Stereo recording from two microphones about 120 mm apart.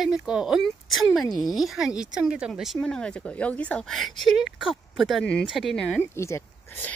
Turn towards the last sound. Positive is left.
turn(degrees=25)  # may be behind; listen again after turning